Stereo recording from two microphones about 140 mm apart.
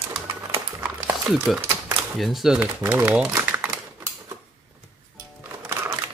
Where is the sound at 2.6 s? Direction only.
15° right (ahead or behind).